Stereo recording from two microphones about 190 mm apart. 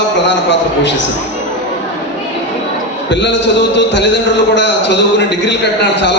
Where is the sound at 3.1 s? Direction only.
70° left (ahead or behind).